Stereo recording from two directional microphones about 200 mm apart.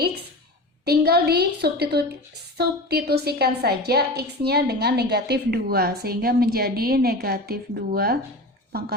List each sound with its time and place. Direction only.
0.9 s a woman's voice: 50° right (ahead or behind)